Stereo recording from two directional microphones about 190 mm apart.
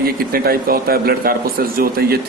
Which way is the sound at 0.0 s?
50° right (ahead or behind).